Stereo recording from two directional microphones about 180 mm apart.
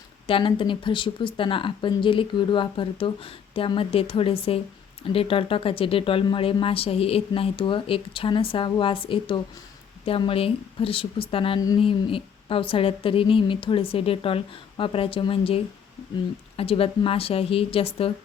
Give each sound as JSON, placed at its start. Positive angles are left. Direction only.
{"t": 0.3, "sound": "a woman's voice", "side_deg": 30}